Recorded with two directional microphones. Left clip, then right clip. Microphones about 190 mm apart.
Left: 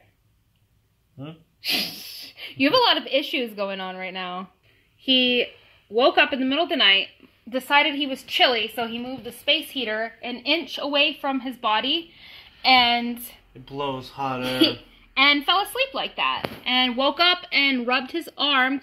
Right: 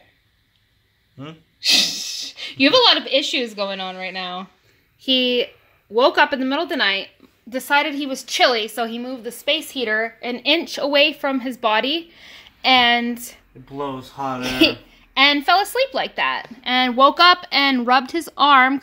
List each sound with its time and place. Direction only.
1.6 s speech: 10° right (ahead or behind)
7.4 s a woman's voice: 5° left (ahead or behind)
8.1 s a woman's voice: 15° right (ahead or behind)
10.4 s a woman's voice: 40° right (ahead or behind)
12.6 s a woman's voice: 25° right (ahead or behind)
13.7 s speech: 15° right (ahead or behind)
14.1 s a woman's voice: 35° right (ahead or behind)